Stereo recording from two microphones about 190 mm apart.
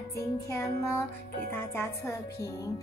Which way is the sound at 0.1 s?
15° left (ahead or behind).